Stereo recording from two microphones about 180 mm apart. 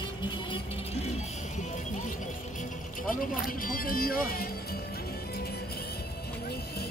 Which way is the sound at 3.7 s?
55° left (ahead or behind).